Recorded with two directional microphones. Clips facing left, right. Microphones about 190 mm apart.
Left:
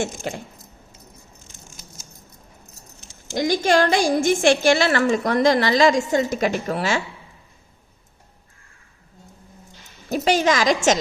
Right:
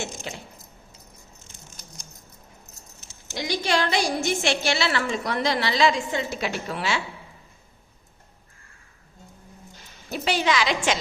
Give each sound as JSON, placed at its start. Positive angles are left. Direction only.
{"t": 0.0, "sound": "a woman's voice", "side_deg": 55}
{"t": 3.3, "sound": "a woman's voice", "side_deg": 45}
{"t": 10.1, "sound": "a woman's voice", "side_deg": 45}